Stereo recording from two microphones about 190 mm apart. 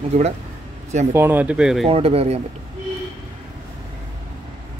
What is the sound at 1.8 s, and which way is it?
Speech, 30° right (ahead or behind).